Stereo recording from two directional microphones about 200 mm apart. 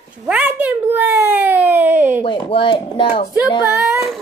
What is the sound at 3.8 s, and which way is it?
Speech, 5° right (ahead or behind).